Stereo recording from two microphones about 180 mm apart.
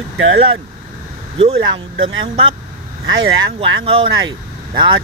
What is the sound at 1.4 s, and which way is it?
Speech, 30° right (ahead or behind).